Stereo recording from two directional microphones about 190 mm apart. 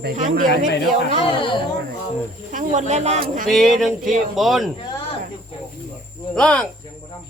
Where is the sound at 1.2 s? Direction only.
25° left (ahead or behind).